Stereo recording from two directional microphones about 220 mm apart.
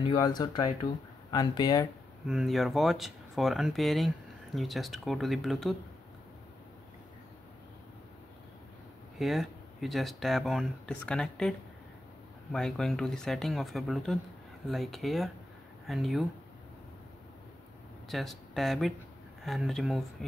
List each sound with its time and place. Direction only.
0.1 s speech: 15° left (ahead or behind)
2.2 s speech: centre (ahead or behind)
9.2 s speech: centre (ahead or behind)
12.5 s speech: centre (ahead or behind)
18.0 s speech: centre (ahead or behind)